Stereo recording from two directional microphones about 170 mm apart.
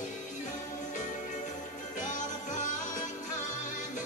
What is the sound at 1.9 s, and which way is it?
Music, 45° left (ahead or behind).